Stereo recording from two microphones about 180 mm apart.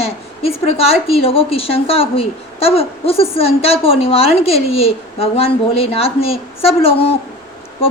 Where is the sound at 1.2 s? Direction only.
30° left (ahead or behind).